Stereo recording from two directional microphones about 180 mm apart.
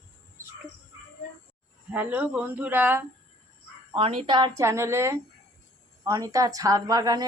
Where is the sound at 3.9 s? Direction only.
35° right (ahead or behind).